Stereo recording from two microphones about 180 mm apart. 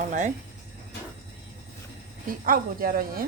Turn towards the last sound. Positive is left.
turn(degrees=-50)  # may be behind; listen again after turning